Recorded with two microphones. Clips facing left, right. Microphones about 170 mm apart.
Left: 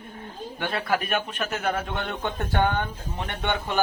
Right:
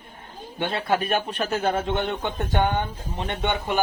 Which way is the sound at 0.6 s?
25° right (ahead or behind).